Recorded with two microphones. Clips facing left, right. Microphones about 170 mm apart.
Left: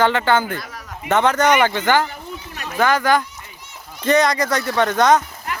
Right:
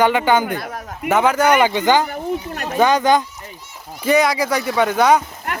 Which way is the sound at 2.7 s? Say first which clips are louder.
Right 2 dB; 20° right (ahead or behind).